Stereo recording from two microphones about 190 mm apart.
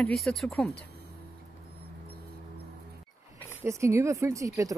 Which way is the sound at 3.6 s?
15° right (ahead or behind).